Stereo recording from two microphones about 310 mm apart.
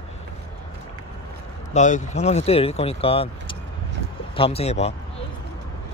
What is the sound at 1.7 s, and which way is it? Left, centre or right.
Speech, left.